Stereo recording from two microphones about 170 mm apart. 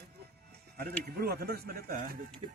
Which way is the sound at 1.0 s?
65° right (ahead or behind).